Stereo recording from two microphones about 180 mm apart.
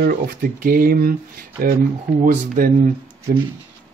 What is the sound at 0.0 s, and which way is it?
Speech, 55° right (ahead or behind).